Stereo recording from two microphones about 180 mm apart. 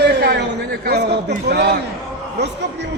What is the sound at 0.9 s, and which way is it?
Speech, 65° right (ahead or behind).